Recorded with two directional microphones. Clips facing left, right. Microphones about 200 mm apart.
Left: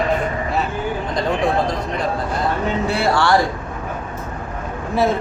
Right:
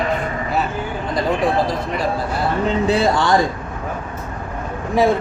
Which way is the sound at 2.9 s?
20° right (ahead or behind).